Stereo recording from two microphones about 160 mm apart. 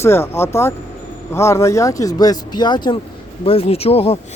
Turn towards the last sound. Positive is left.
turn(degrees=40)  # may be behind; listen again after turning